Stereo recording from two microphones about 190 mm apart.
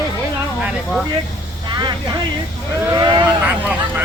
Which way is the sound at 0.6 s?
5° right (ahead or behind).